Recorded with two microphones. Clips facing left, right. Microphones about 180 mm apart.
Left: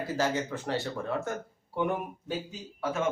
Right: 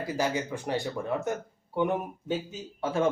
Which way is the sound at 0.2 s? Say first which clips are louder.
Even; 15° right (ahead or behind).